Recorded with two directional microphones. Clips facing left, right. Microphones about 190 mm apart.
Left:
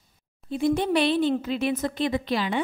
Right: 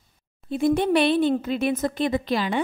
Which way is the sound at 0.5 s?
55° right (ahead or behind).